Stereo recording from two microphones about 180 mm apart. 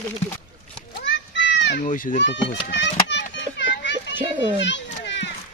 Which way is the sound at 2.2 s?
90° left.